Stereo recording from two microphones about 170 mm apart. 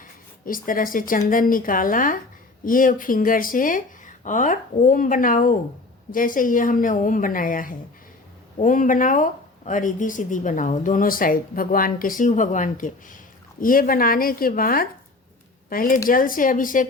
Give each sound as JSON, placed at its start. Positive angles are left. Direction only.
{"t": 0.4, "sound": "a woman's voice", "side_deg": 55}